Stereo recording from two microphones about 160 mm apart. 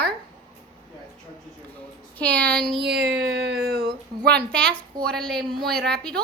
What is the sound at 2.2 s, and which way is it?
Speech, 10° left (ahead or behind).